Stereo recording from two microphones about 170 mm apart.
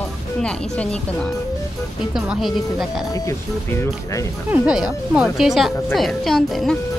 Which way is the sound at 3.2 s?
15° left (ahead or behind).